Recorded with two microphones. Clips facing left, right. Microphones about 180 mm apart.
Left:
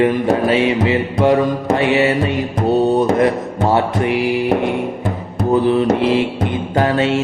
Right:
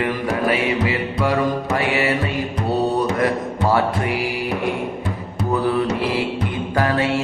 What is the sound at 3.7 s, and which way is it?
Music, 25° left (ahead or behind).